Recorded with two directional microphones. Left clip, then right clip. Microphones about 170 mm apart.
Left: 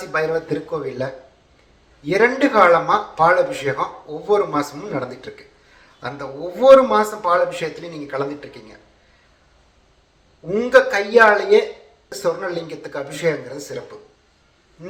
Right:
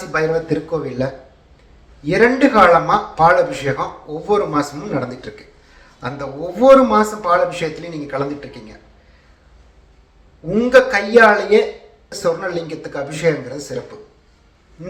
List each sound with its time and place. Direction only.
0.1 s a man's voice: 15° left (ahead or behind)
10.5 s a man's voice: 20° left (ahead or behind)